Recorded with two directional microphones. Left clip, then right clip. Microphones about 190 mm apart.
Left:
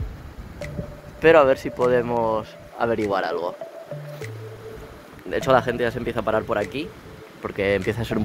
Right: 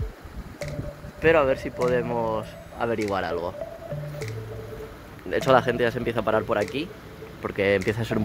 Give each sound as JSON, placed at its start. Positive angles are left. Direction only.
{"t": 1.2, "sound": "speech", "side_deg": 25}
{"t": 5.3, "sound": "speech", "side_deg": -5}